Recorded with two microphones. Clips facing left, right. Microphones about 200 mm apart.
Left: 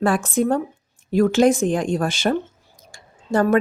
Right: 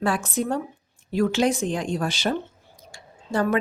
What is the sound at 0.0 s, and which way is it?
Speech, 50° left (ahead or behind).